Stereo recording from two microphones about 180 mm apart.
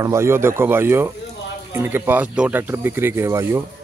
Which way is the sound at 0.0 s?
15° right (ahead or behind).